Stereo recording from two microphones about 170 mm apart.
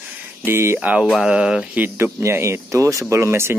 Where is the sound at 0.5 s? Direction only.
15° right (ahead or behind).